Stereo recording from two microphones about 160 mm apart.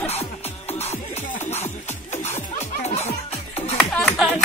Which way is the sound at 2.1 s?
45° left (ahead or behind).